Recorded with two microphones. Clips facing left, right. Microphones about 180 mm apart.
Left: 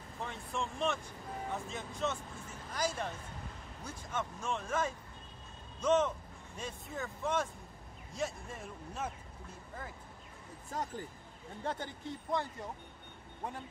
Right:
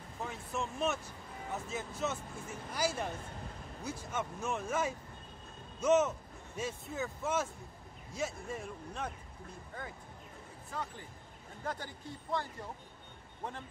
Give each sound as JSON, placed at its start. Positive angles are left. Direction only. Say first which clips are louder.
{"t": 0.2, "sound": "speech", "louder": "right 1 dB", "side_deg": -5}
{"t": 10.7, "sound": "speech", "louder": "left 3 dB", "side_deg": 45}
{"t": 11.6, "sound": "speech", "louder": "left 2 dB", "side_deg": 25}